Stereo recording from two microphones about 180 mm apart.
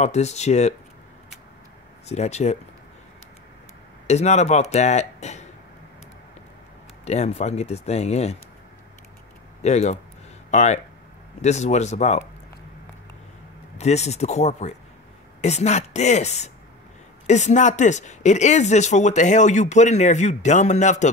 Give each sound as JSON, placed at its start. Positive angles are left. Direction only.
{"t": 0.0, "sound": "speech", "side_deg": 40}
{"t": 2.0, "sound": "speech", "side_deg": 35}
{"t": 4.1, "sound": "speech", "side_deg": 40}
{"t": 7.1, "sound": "speech", "side_deg": 35}
{"t": 9.6, "sound": "speech", "side_deg": 40}
{"t": 13.7, "sound": "speech", "side_deg": 35}